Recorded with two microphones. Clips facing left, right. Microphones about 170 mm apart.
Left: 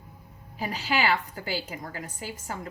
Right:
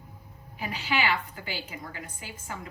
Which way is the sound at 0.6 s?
40° left (ahead or behind).